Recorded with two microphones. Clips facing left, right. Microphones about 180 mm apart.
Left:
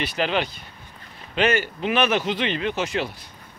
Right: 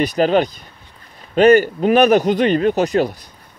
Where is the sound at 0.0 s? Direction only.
40° right (ahead or behind).